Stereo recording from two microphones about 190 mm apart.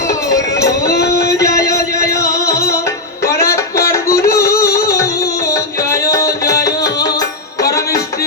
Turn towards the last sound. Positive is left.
turn(degrees=15)  # may be behind; listen again after turning